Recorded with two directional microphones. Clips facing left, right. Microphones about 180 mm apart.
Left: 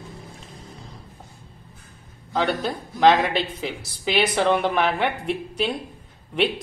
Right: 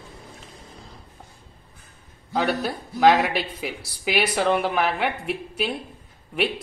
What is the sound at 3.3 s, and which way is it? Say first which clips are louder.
A woman's voice: left 2 dB; 10° right (ahead or behind).